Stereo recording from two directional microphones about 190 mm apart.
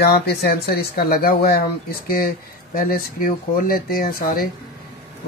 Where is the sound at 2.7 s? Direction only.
50° left (ahead or behind).